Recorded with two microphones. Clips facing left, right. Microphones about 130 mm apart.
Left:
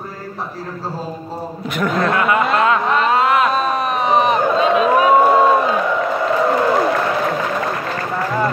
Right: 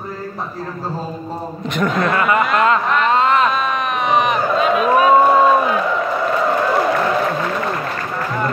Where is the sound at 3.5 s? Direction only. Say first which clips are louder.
Left 2 dB; 35° left (ahead or behind).